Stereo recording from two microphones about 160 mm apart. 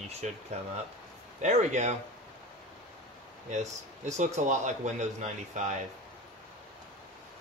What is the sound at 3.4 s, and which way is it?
A man's voice, 50° right (ahead or behind).